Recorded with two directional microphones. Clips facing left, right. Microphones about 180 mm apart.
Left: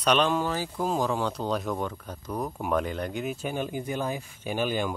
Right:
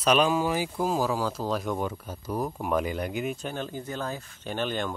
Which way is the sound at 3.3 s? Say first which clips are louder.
Left 3 dB; 10° left (ahead or behind).